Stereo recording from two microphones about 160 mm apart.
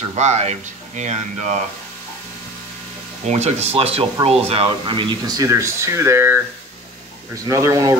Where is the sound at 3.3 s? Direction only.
45° right (ahead or behind); by 6.3 s 15° right (ahead or behind).